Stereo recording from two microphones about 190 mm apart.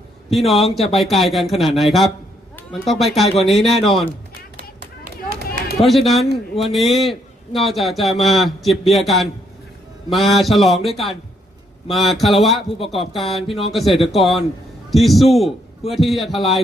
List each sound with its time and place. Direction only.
0.3 s a man's voice: centre (ahead or behind)
4.6 s run: 50° right (ahead or behind)
5.8 s a man's voice: centre (ahead or behind)